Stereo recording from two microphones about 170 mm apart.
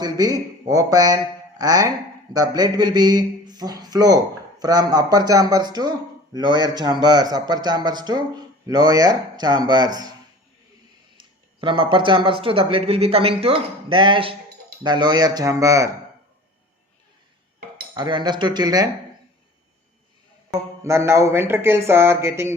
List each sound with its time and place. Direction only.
0.0 s speech: 20° right (ahead or behind)
11.2 s speech: 30° right (ahead or behind)
17.9 s speech: 25° right (ahead or behind)
20.8 s speech: 15° right (ahead or behind)